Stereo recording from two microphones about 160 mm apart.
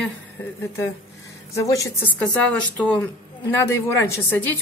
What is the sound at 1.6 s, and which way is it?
Speech, 20° left (ahead or behind).